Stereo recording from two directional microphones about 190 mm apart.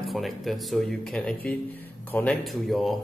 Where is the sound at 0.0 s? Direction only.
Centre (ahead or behind).